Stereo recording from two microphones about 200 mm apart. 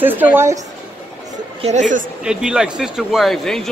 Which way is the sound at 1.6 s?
35° right (ahead or behind).